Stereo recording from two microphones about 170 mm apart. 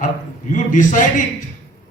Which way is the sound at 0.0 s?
50° left (ahead or behind).